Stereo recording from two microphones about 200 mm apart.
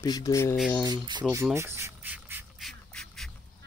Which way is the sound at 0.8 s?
20° right (ahead or behind).